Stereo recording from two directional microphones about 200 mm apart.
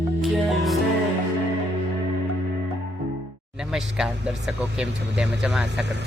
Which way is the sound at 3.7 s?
5° right (ahead or behind).